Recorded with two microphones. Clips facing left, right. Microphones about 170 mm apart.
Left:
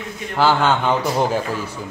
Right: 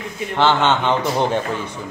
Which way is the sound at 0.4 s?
10° left (ahead or behind).